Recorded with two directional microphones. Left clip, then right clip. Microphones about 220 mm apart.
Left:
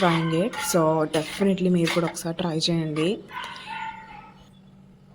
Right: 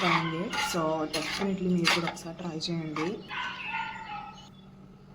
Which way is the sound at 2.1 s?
35° left (ahead or behind).